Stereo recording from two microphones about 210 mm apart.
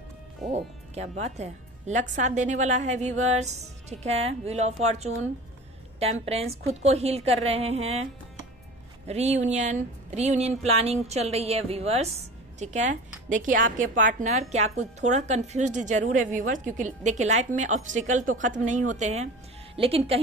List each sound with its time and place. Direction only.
0.5 s a woman's voice: 35° right (ahead or behind)
6.2 s a woman's voice: 30° right (ahead or behind)